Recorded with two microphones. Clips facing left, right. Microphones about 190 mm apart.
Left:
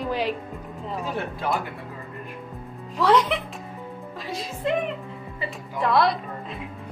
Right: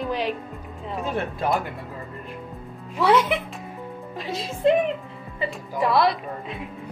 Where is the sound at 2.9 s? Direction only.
5° right (ahead or behind).